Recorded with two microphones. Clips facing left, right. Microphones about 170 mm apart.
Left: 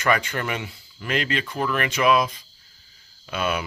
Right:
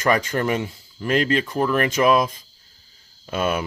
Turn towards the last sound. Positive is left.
turn(degrees=-45)  # may be behind; listen again after turning